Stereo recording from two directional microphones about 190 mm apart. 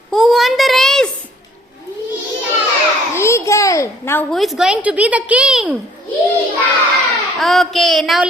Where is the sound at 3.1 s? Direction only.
15° left (ahead or behind).